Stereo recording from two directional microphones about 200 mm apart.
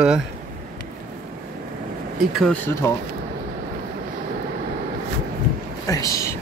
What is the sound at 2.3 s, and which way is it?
Speech, centre (ahead or behind).